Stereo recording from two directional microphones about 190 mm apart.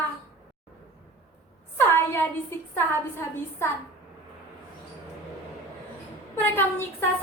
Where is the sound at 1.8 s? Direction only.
10° left (ahead or behind).